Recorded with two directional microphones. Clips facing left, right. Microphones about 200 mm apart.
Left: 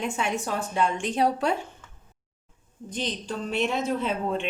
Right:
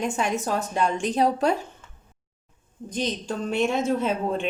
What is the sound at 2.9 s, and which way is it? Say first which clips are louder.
A woman's voice: right 3 dB; 45° right (ahead or behind).